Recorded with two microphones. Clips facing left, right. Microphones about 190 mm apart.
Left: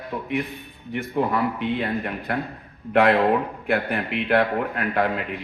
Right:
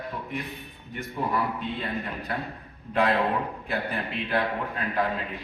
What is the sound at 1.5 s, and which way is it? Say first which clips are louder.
Speech: left 6 dB; 70° left (ahead or behind).